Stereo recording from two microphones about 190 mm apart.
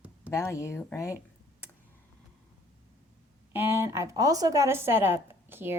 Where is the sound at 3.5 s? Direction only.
10° right (ahead or behind).